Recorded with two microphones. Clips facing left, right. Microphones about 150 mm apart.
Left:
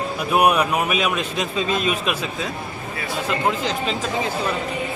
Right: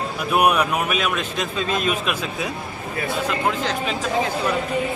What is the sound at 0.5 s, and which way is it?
A man's voice, 5° left (ahead or behind).